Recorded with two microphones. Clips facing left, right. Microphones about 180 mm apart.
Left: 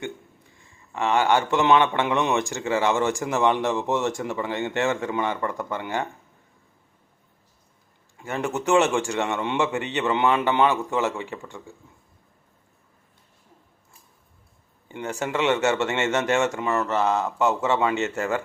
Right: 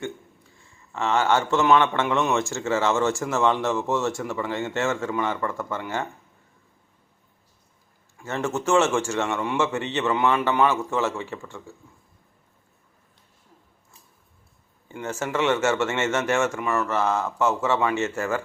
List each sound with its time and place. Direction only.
0.9 s speech: 15° left (ahead or behind)
8.2 s speech: 15° left (ahead or behind)
14.8 s speech: 15° left (ahead or behind)